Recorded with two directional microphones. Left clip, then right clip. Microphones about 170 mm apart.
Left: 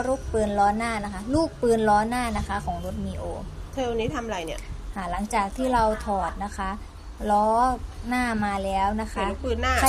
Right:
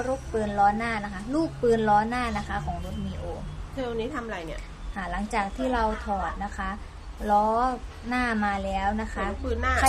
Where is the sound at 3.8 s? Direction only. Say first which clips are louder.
Left 4 dB; 15° left (ahead or behind).